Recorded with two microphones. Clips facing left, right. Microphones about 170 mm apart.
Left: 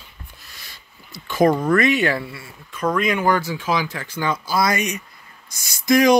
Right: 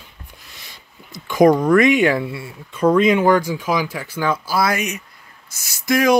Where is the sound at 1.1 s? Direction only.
15° right (ahead or behind).